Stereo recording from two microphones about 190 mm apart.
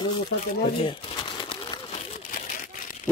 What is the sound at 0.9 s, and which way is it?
Crumpling, 25° left (ahead or behind).